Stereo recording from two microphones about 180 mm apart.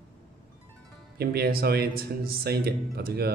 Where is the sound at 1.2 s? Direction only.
60° right (ahead or behind).